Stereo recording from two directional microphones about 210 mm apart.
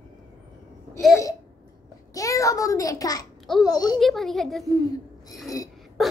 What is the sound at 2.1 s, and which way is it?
A child's voice, 15° left (ahead or behind).